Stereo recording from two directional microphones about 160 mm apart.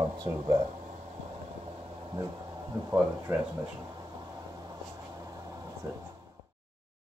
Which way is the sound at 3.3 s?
15° right (ahead or behind).